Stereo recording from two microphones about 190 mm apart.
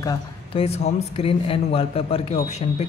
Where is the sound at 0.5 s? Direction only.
30° left (ahead or behind).